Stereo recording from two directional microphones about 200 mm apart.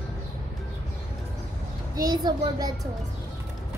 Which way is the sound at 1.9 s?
20° right (ahead or behind).